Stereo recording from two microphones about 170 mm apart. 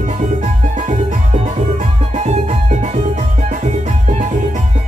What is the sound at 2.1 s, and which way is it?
Music, 40° right (ahead or behind).